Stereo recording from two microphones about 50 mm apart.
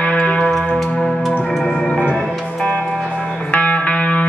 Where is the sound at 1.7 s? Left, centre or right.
Centre.